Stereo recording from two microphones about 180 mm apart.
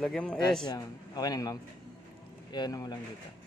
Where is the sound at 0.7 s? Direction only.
20° left (ahead or behind).